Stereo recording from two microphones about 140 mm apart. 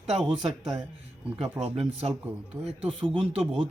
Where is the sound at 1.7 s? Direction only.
45° right (ahead or behind).